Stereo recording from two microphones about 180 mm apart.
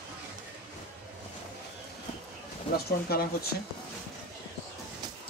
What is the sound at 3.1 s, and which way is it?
Speech, 60° left (ahead or behind).